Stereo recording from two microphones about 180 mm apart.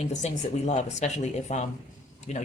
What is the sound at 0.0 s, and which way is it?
Speech, 40° left (ahead or behind).